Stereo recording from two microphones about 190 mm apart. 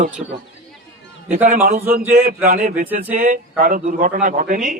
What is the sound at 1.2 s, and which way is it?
A man's voice, 45° right (ahead or behind).